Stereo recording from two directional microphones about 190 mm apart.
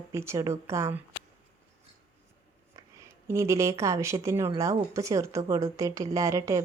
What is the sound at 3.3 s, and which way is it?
Speech, 15° right (ahead or behind).